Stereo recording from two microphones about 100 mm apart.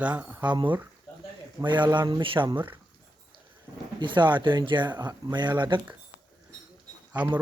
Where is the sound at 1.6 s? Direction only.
50° right (ahead or behind).